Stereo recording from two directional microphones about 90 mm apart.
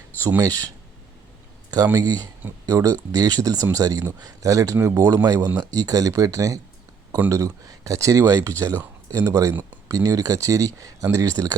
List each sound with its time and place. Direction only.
0.2 s speech: 25° right (ahead or behind)
0.4 s speech: 40° right (ahead or behind)
2.6 s speech: 45° right (ahead or behind)
5.2 s speech: 45° right (ahead or behind)